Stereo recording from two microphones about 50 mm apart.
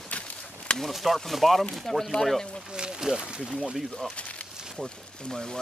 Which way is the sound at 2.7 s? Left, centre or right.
Centre.